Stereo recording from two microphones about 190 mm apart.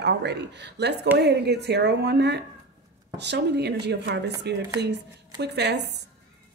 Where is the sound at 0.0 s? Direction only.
60° right (ahead or behind).